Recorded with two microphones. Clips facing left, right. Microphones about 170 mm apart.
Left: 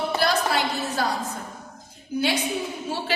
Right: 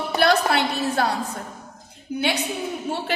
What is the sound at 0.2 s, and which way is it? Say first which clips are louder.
Music: right 6 dB; 65° right (ahead or behind).